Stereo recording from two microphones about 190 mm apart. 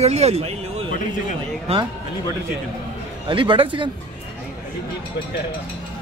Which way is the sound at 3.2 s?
25° right (ahead or behind).